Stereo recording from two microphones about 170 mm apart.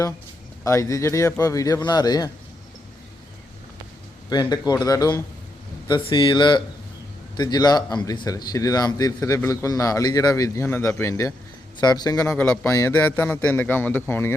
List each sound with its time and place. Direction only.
0.6 s speech: 20° left (ahead or behind)
4.3 s a man's voice: 25° left (ahead or behind)